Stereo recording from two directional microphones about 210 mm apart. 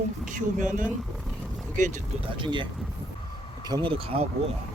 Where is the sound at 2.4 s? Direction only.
25° right (ahead or behind).